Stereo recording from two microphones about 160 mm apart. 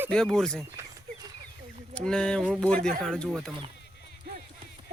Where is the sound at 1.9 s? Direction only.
5° left (ahead or behind).